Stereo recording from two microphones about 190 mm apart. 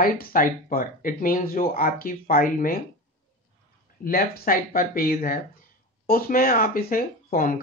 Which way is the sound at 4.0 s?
50° left (ahead or behind).